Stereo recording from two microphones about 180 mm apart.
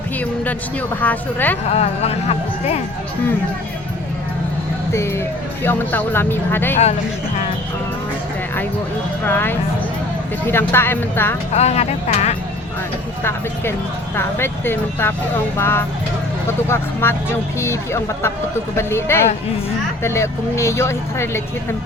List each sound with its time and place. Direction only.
0.4 s speech: 10° left (ahead or behind)
1.7 s speech: 35° left (ahead or behind)
4.9 s speech: 15° left (ahead or behind)
9.2 s speech: 10° left (ahead or behind)
11.5 s speech: 35° left (ahead or behind)
14.2 s speech: 15° left (ahead or behind)